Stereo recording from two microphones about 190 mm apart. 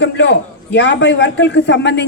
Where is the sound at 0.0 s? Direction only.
65° left (ahead or behind).